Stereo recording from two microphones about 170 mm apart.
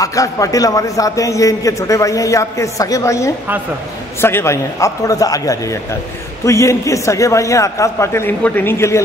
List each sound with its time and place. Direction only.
0.0 s a man's voice: 20° left (ahead or behind)